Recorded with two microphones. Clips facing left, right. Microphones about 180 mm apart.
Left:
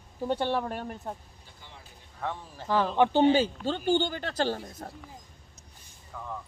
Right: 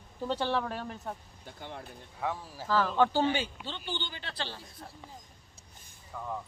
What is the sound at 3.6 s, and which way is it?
Speech, 45° left (ahead or behind).